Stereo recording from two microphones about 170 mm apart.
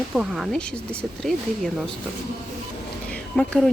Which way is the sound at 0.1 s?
Centre (ahead or behind).